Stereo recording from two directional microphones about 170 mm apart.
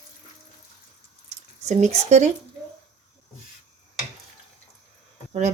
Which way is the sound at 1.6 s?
45° right (ahead or behind).